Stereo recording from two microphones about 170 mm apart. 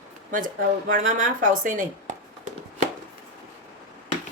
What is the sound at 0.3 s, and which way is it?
Speech, 50° right (ahead or behind).